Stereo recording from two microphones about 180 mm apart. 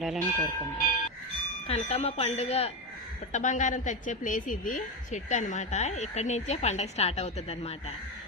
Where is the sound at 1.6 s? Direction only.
35° left (ahead or behind).